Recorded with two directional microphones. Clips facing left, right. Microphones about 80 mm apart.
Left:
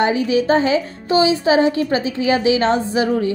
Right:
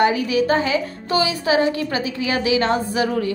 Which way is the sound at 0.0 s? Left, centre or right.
Left.